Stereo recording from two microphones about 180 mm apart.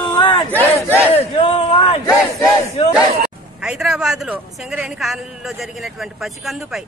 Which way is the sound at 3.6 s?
5° right (ahead or behind).